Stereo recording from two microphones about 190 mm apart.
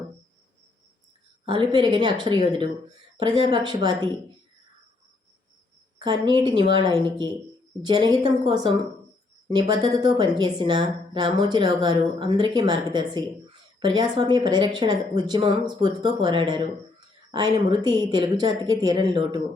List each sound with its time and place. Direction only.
1.5 s a woman's voice: 25° right (ahead or behind)
6.0 s a woman's voice: 25° right (ahead or behind)